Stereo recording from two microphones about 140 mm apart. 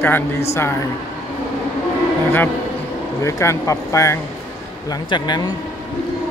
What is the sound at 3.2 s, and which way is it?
Speech, 20° left (ahead or behind).